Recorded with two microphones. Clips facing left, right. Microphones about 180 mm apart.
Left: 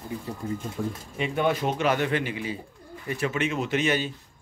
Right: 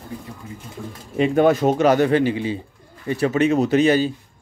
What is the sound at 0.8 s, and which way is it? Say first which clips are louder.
Speech: left 3 dB; 55° left (ahead or behind).